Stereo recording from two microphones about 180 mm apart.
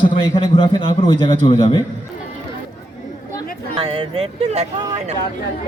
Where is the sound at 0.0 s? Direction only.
30° left (ahead or behind).